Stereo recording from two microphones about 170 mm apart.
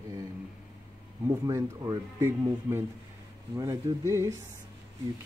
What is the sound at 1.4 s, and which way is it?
Speech, 20° right (ahead or behind).